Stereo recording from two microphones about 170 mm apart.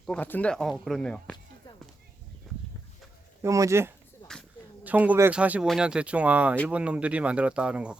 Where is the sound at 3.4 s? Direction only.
15° right (ahead or behind).